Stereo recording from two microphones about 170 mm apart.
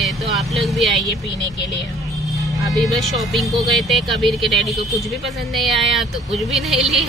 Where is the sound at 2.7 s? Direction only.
Centre (ahead or behind).